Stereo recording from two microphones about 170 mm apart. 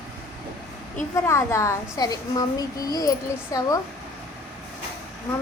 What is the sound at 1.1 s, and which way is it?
A woman's voice, 15° left (ahead or behind).